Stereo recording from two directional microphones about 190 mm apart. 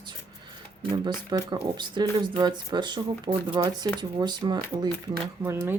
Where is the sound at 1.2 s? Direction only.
20° right (ahead or behind).